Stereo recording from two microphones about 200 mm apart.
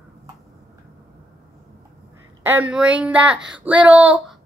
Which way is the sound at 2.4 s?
10° right (ahead or behind).